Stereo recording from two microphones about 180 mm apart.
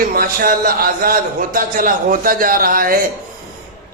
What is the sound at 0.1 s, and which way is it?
A man's voice, 55° right (ahead or behind).